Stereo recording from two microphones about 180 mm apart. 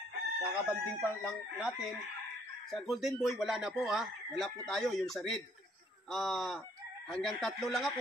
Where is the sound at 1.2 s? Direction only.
5° right (ahead or behind).